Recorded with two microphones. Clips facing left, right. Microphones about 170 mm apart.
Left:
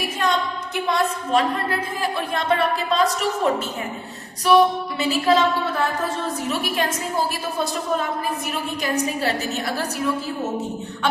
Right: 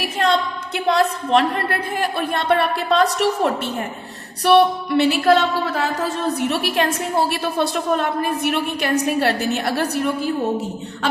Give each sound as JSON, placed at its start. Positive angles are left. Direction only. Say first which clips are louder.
{"t": 0.2, "sound": "a woman's voice", "louder": "right 4 dB", "side_deg": -70}